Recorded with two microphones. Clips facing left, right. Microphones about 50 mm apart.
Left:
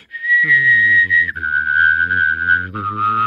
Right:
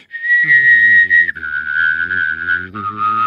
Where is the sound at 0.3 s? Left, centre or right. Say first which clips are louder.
Right 2 dB; centre.